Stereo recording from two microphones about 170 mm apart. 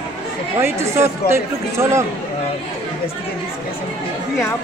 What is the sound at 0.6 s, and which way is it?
Speech, 15° right (ahead or behind).